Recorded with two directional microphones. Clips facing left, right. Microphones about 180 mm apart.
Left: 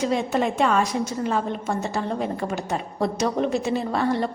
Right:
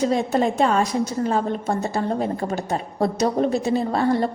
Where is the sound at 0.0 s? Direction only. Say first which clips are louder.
Right 3 dB; 35° right (ahead or behind).